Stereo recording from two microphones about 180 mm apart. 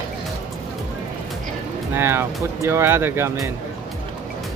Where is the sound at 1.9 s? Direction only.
15° right (ahead or behind).